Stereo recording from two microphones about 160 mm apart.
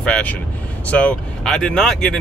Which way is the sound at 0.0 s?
5° left (ahead or behind).